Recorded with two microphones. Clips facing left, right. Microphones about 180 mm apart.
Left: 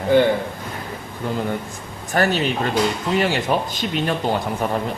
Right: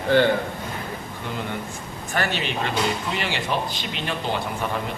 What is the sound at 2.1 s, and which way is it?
Speech, 40° left (ahead or behind).